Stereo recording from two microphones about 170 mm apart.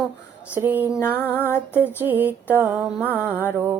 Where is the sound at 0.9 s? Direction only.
15° left (ahead or behind).